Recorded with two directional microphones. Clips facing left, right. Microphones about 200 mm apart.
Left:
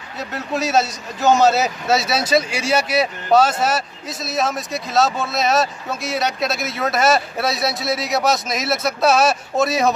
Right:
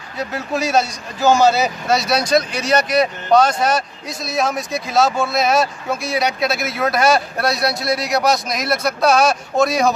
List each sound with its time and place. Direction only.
0.2 s a man's voice: centre (ahead or behind)